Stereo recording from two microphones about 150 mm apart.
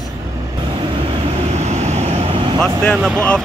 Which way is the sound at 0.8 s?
35° right (ahead or behind).